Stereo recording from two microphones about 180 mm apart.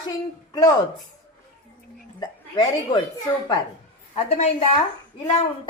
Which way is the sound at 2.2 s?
25° left (ahead or behind).